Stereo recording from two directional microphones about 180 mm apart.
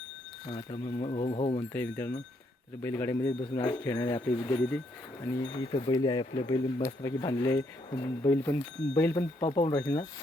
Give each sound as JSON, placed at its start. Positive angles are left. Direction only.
{"t": 0.5, "sound": "speech", "side_deg": 25}
{"t": 1.7, "sound": "speech", "side_deg": 10}
{"t": 4.4, "sound": "speech", "side_deg": 30}